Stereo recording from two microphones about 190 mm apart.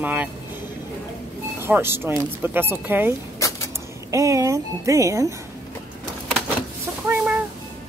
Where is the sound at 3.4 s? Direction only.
15° left (ahead or behind).